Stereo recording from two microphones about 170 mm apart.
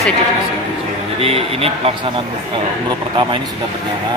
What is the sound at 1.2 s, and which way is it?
Speech, 35° right (ahead or behind).